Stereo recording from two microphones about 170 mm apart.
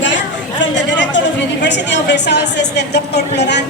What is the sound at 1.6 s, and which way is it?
Speech, 90° left.